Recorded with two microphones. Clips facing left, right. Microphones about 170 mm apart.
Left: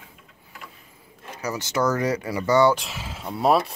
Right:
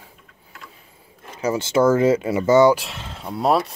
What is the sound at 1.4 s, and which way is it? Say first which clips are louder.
Speech: right 7 dB; 25° right (ahead or behind).